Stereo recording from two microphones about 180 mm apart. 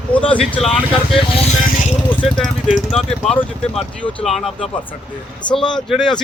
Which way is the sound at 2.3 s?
5° left (ahead or behind).